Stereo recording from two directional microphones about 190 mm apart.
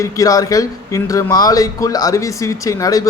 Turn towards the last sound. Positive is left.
turn(degrees=20)  # may be behind; listen again after turning